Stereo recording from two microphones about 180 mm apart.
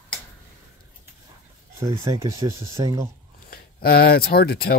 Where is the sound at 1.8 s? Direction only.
20° right (ahead or behind).